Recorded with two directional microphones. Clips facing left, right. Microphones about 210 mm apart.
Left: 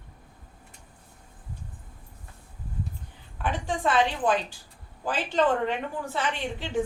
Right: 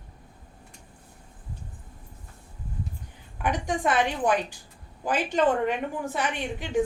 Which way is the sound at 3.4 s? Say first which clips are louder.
Right 1 dB; 15° right (ahead or behind).